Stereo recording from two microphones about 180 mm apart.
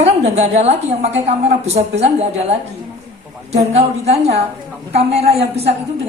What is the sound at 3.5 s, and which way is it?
Speech, 35° right (ahead or behind).